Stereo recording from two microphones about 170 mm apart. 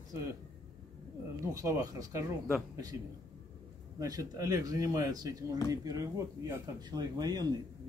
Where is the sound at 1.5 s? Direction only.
20° right (ahead or behind).